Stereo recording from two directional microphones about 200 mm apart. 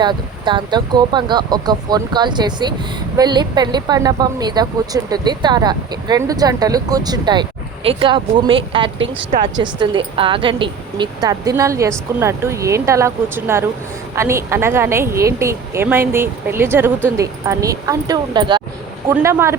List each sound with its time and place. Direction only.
0.0 s speech: 25° right (ahead or behind)